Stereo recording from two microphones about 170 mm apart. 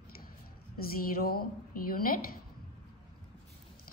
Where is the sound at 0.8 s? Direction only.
60° left (ahead or behind).